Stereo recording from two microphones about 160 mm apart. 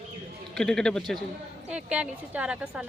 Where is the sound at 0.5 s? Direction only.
5° left (ahead or behind).